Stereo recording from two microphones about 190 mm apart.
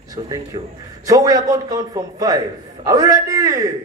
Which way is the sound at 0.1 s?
20° right (ahead or behind).